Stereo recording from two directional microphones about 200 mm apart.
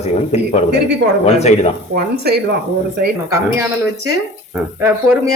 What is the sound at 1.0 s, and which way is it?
Speech, 65° right (ahead or behind).